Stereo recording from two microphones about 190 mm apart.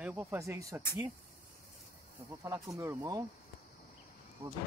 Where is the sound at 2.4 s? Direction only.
15° right (ahead or behind).